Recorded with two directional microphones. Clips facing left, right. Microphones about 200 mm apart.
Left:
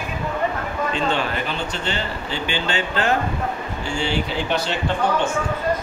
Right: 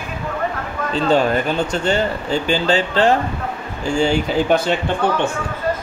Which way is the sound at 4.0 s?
45° right (ahead or behind).